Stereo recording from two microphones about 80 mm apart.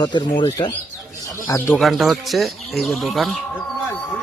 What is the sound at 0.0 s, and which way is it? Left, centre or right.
Speech, left.